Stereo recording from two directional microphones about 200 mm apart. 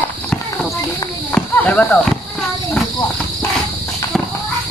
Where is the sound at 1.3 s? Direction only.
5° left (ahead or behind).